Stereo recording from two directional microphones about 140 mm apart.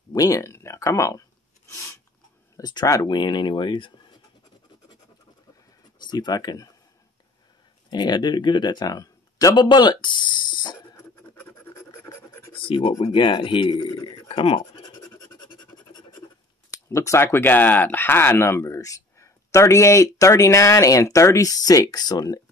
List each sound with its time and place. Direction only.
0.1 s speech: 25° left (ahead or behind)
5.9 s speech: 30° left (ahead or behind)
7.9 s speech: 30° left (ahead or behind)
11.0 s scratch: 15° left (ahead or behind)
12.5 s speech: 35° left (ahead or behind)
14.2 s bleat: 40° left (ahead or behind)
15.1 s scratch: 25° left (ahead or behind)
16.7 s speech: 20° left (ahead or behind)